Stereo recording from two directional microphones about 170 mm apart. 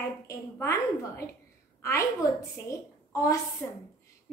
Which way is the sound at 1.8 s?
15° left (ahead or behind).